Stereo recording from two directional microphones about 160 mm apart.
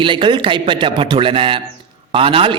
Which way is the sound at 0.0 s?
30° right (ahead or behind).